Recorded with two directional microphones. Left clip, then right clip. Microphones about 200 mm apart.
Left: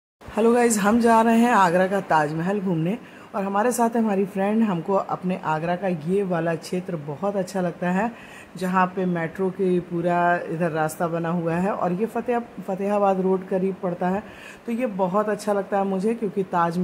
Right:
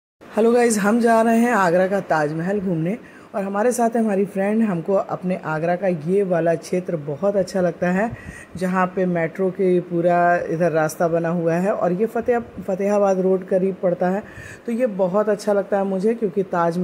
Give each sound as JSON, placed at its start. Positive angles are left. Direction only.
{"t": 0.4, "sound": "a man's voice", "side_deg": -15}